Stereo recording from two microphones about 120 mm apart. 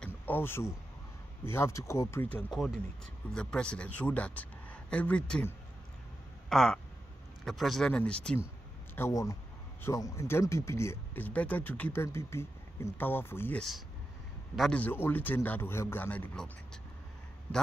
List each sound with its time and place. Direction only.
0.0 s a sound: 15° left (ahead or behind)
1.4 s speech: 20° left (ahead or behind)
2.5 s speech: centre (ahead or behind)
6.5 s speech: centre (ahead or behind)
8.9 s speech: 25° left (ahead or behind)
13.6 s a man's voice: centre (ahead or behind)
14.8 s speech: 15° left (ahead or behind)